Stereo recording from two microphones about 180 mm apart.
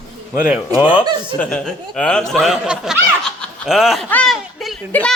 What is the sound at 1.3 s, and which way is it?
A woman's voice, 5° left (ahead or behind).